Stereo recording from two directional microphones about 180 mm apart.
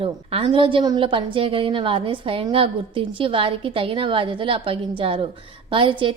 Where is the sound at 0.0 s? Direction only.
30° right (ahead or behind).